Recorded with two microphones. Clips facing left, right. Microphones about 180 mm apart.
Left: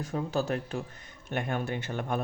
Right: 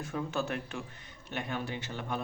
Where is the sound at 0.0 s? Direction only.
35° left (ahead or behind).